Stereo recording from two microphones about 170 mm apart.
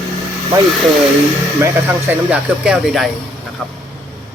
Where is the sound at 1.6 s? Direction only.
10° right (ahead or behind).